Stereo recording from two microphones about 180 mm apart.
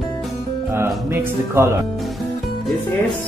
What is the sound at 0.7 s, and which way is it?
Music, 15° right (ahead or behind).